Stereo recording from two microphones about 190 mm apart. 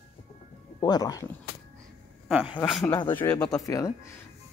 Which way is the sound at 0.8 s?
20° left (ahead or behind).